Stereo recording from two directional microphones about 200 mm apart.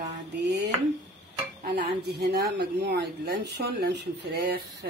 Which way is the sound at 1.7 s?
55° right (ahead or behind).